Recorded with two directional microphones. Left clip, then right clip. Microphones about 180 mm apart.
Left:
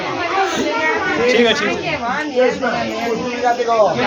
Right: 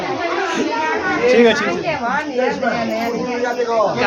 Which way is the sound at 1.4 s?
55° right (ahead or behind).